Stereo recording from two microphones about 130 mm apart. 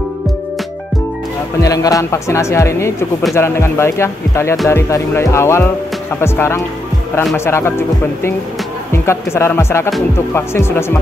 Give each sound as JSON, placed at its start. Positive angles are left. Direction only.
{"t": 1.6, "sound": "speech", "side_deg": 25}